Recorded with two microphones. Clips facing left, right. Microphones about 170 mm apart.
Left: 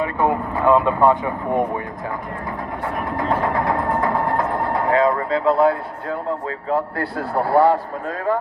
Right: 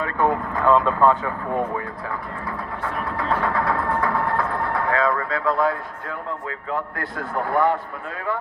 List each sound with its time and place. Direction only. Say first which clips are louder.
0.0 s speech: left 2 dB; 10° left (ahead or behind)
2.8 s music: left 3 dB; 20° left (ahead or behind)
6.7 s a man's voice: left 6 dB; 35° left (ahead or behind)